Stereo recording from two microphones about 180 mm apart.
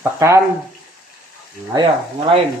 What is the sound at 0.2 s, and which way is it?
Speech, 15° right (ahead or behind).